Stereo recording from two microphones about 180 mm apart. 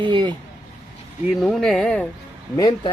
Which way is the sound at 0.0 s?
25° right (ahead or behind).